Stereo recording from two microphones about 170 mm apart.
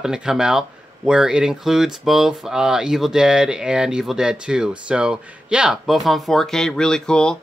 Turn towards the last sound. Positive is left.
turn(degrees=5)  # may be behind; listen again after turning